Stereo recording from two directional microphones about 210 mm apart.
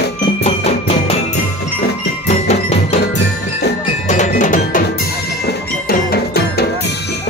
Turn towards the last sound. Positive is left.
turn(degrees=50)  # may be behind; listen again after turning